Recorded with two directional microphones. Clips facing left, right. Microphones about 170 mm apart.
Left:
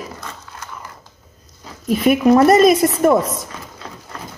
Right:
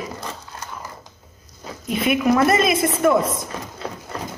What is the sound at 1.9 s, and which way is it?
A woman's voice, 40° left (ahead or behind).